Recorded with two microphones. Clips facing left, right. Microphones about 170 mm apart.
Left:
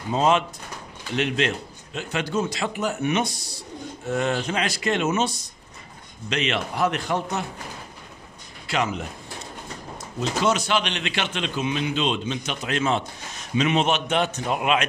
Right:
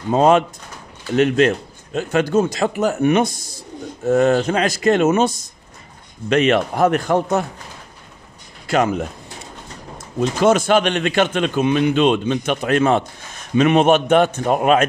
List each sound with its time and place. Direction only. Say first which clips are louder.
0.1 s a man's voice: right 7 dB; 50° right (ahead or behind)
8.6 s speech: right 8 dB; 50° right (ahead or behind)
10.1 s a man's voice: right 8 dB; 50° right (ahead or behind)